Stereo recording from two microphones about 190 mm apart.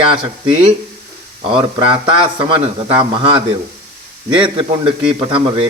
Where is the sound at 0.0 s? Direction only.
30° right (ahead or behind).